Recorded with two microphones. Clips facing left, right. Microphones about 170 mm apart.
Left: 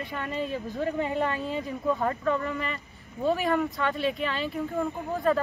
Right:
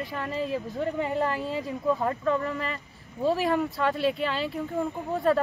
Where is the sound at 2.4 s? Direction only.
35° right (ahead or behind).